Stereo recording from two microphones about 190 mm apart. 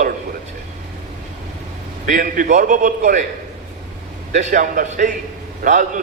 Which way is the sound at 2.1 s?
45° right (ahead or behind).